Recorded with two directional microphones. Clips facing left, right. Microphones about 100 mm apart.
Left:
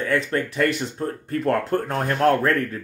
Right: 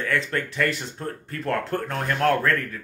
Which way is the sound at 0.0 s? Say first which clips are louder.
Left 3 dB; 30° left (ahead or behind).